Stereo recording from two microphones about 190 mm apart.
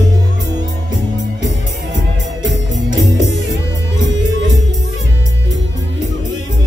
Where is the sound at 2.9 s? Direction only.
20° right (ahead or behind).